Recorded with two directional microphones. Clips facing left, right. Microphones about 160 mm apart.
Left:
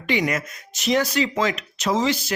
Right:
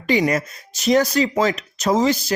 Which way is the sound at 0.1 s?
35° right (ahead or behind).